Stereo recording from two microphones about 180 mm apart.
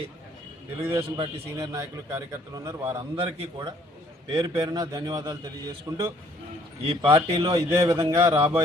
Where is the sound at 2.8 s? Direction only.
30° right (ahead or behind).